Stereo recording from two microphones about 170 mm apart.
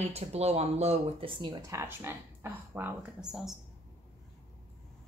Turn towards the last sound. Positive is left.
turn(degrees=-5)  # may be behind; listen again after turning